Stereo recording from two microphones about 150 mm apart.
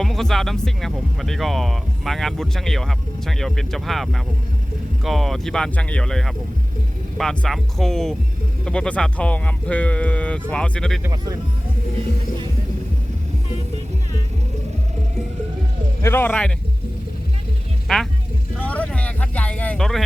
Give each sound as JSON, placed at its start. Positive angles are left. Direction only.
{"t": 0.0, "sound": "speech", "side_deg": 0}
{"t": 11.0, "sound": "speech", "side_deg": -25}
{"t": 16.0, "sound": "speech", "side_deg": 15}
{"t": 17.8, "sound": "speech", "side_deg": 0}
{"t": 18.5, "sound": "a sound", "side_deg": 10}